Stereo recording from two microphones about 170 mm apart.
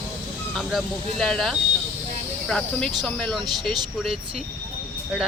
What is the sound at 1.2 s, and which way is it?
Speech, centre (ahead or behind).